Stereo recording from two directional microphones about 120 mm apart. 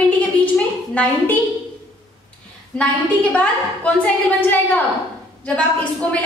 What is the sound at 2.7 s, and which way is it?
A woman's voice, 10° left (ahead or behind).